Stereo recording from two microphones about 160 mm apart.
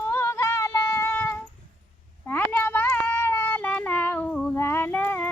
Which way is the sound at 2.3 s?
10° left (ahead or behind).